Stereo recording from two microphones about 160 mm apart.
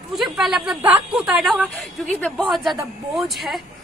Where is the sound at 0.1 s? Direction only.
Centre (ahead or behind).